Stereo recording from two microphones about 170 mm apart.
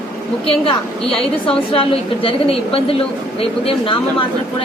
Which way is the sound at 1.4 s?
35° left (ahead or behind).